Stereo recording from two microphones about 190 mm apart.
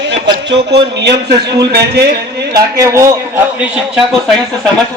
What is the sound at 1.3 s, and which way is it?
Speech, 20° right (ahead or behind).